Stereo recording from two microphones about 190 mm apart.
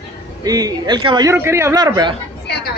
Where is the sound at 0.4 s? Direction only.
20° right (ahead or behind).